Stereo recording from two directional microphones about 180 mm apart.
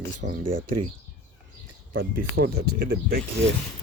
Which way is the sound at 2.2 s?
55° right (ahead or behind).